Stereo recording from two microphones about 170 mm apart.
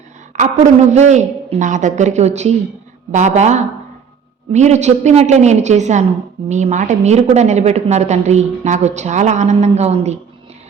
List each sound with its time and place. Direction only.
0.3 s a man's voice: 45° right (ahead or behind)